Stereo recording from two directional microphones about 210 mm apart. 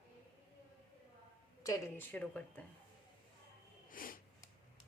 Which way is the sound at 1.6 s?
15° left (ahead or behind).